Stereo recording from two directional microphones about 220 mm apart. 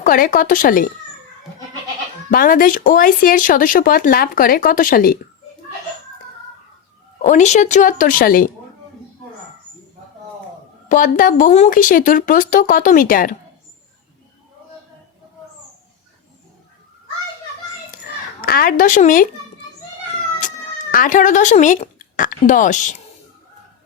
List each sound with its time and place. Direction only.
0.0 s speech: 40° left (ahead or behind)
2.3 s speech: 40° left (ahead or behind)
7.2 s speech: 35° left (ahead or behind)
10.8 s speech: 35° left (ahead or behind)
18.4 s speech: 40° left (ahead or behind)
20.9 s a woman's voice: 35° left (ahead or behind)